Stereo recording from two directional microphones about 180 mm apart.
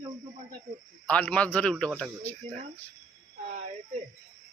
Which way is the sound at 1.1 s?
5° left (ahead or behind).